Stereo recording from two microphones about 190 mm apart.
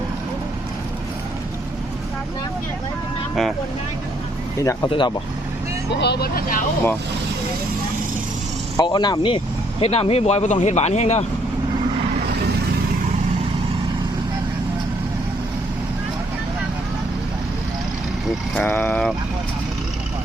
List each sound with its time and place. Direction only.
4.6 s speech: 15° left (ahead or behind)
6.0 s speech: 60° left (ahead or behind)
8.8 s speech: 20° left (ahead or behind)
18.5 s speech: 10° left (ahead or behind)